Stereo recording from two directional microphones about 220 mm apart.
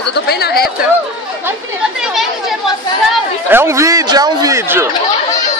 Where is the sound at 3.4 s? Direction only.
10° right (ahead or behind).